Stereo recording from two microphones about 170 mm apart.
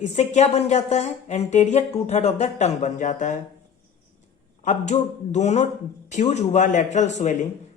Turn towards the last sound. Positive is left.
turn(degrees=45)  # may be behind; listen again after turning